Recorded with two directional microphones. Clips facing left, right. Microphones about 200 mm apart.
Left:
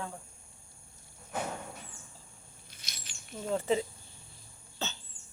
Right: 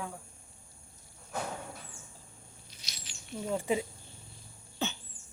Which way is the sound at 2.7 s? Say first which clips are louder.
Even; 50° left (ahead or behind).